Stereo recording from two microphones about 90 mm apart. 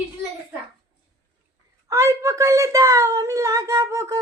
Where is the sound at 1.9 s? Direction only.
35° right (ahead or behind).